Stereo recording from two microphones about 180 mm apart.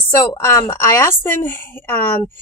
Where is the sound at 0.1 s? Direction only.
15° left (ahead or behind).